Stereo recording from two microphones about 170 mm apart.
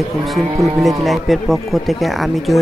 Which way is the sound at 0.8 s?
Centre (ahead or behind).